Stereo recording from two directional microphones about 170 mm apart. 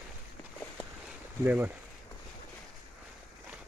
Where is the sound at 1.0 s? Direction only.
10° right (ahead or behind).